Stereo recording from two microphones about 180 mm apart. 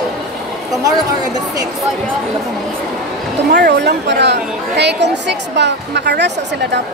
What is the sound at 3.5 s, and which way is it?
A woman's voice, 70° right (ahead or behind).